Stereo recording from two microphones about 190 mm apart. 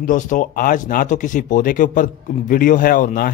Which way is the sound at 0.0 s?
45° left (ahead or behind).